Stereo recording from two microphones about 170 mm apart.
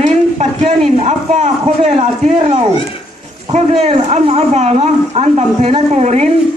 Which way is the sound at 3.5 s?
35° right (ahead or behind).